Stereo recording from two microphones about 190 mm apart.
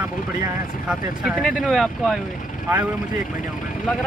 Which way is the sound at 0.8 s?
5° right (ahead or behind).